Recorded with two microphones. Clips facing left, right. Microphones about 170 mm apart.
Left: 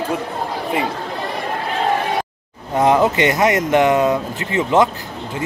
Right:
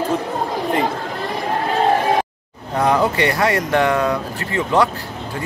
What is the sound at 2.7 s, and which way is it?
Speech, 20° left (ahead or behind).